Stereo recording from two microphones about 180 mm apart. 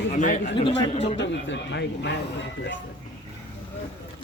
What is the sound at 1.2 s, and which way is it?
Speech, 80° left.